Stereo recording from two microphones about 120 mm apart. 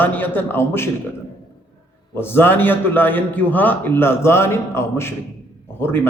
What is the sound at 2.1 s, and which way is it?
A man's voice, 20° left (ahead or behind).